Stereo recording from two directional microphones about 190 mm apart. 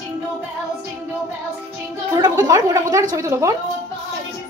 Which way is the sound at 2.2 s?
15° right (ahead or behind).